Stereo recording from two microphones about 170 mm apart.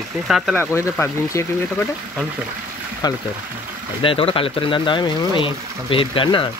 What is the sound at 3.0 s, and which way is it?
Speech, 25° left (ahead or behind).